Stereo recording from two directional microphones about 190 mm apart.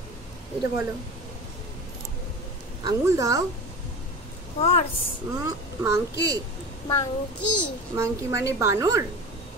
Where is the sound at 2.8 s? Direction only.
15° right (ahead or behind).